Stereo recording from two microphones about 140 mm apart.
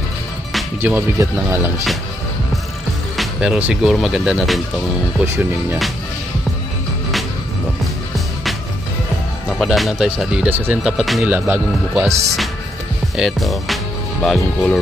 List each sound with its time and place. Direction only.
0.8 s speech: 15° right (ahead or behind)
3.2 s speech: 5° right (ahead or behind)
5.2 s speech: 20° right (ahead or behind)
9.6 s speech: centre (ahead or behind)
10.8 s speech: centre (ahead or behind)
11.2 s speech: 15° right (ahead or behind)
13.1 s speech: centre (ahead or behind)